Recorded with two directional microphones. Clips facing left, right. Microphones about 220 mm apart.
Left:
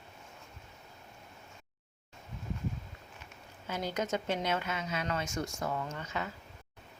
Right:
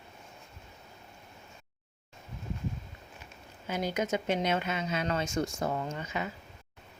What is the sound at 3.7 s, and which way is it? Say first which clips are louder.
Speech: right 3 dB; 15° right (ahead or behind).